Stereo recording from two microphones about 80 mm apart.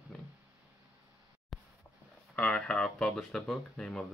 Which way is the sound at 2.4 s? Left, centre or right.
Centre.